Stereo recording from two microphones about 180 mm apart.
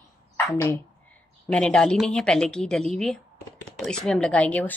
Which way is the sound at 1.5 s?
5° left (ahead or behind).